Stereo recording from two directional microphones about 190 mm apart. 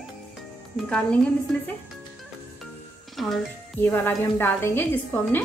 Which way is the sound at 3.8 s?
10° left (ahead or behind).